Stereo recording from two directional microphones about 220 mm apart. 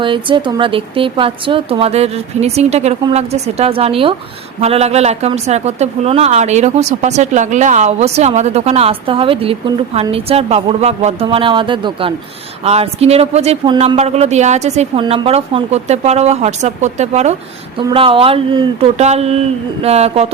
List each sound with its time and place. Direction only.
0.0 s a woman's voice: 20° right (ahead or behind)